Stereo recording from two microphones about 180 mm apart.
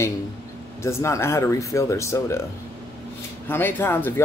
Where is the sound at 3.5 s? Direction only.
10° left (ahead or behind).